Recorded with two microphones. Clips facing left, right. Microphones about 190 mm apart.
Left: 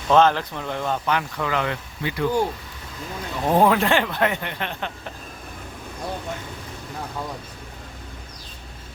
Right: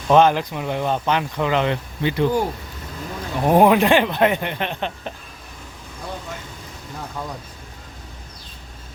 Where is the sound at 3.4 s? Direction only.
15° right (ahead or behind).